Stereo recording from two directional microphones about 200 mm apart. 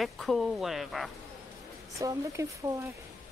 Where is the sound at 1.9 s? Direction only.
15° right (ahead or behind).